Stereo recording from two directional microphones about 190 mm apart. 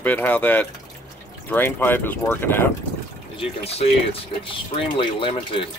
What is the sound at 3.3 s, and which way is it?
Speech, 30° left (ahead or behind).